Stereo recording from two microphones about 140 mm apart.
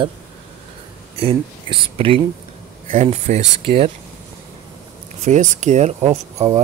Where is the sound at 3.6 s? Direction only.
40° right (ahead or behind).